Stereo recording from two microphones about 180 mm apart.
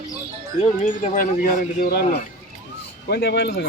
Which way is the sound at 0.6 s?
40° left (ahead or behind).